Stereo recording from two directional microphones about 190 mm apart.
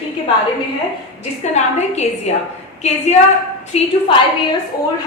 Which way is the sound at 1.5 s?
35° left (ahead or behind).